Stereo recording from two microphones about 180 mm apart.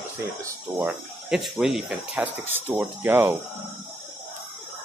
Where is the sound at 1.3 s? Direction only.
Centre (ahead or behind).